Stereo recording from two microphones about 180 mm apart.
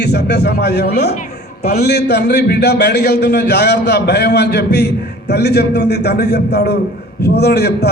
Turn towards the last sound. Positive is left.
turn(degrees=65)  # may be behind; listen again after turning